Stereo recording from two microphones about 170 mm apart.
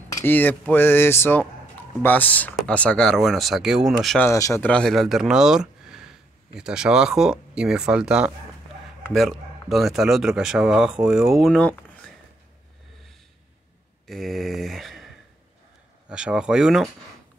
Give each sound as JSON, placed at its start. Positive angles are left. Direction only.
{"t": 0.1, "sound": "speech", "side_deg": 10}
{"t": 4.3, "sound": "speech", "side_deg": 15}
{"t": 4.6, "sound": "speech", "side_deg": 5}
{"t": 14.0, "sound": "mantra", "side_deg": 0}
{"t": 16.1, "sound": "speech", "side_deg": -5}